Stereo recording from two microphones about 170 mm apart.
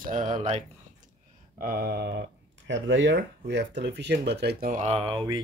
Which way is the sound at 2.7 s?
90° right.